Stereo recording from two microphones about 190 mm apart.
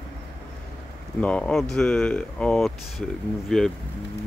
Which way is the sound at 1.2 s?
5° left (ahead or behind).